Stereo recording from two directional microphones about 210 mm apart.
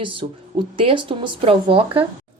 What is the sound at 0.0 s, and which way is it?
A woman's voice, 25° right (ahead or behind).